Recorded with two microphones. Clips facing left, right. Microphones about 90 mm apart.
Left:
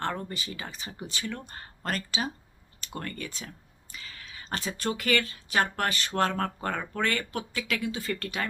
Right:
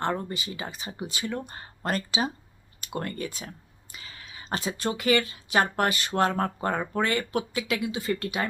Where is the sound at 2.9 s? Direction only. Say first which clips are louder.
Right 5 dB; 25° right (ahead or behind).